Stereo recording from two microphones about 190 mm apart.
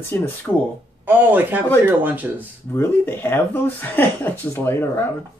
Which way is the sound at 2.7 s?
10° left (ahead or behind).